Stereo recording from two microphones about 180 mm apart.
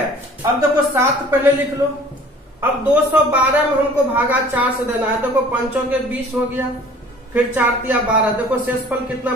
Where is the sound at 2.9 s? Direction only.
10° right (ahead or behind).